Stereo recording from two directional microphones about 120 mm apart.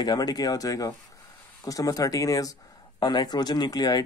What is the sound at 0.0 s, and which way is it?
Speech, 35° left (ahead or behind).